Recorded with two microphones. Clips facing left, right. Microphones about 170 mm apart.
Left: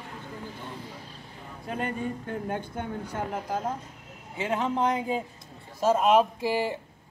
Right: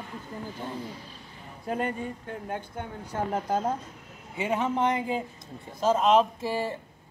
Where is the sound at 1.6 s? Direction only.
30° right (ahead or behind).